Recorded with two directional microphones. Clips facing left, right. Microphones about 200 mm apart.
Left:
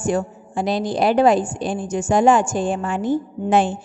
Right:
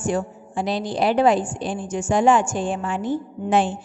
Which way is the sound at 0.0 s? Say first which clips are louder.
Left 2 dB; 45° left (ahead or behind).